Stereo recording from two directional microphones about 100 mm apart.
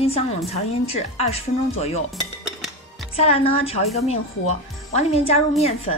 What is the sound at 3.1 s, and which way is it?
Speech, 85° left.